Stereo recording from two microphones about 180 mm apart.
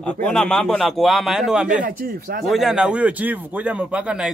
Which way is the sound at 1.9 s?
55° right (ahead or behind).